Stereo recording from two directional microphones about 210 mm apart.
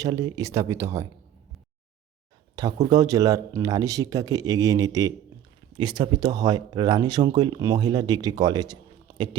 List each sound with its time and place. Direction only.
0.0 s speech: 15° right (ahead or behind)
2.6 s speech: 20° right (ahead or behind)